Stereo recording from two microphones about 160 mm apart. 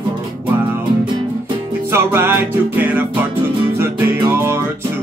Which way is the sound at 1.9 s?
15° right (ahead or behind).